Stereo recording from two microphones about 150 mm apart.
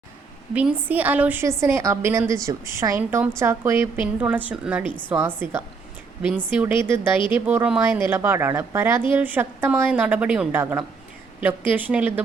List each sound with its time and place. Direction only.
0.5 s a woman's voice: 10° right (ahead or behind)